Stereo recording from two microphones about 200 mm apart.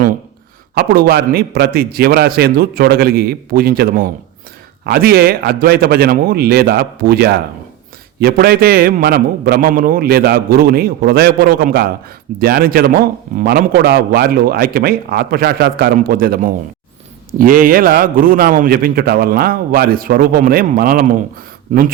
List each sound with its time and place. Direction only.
0.8 s a man's voice: 50° right (ahead or behind)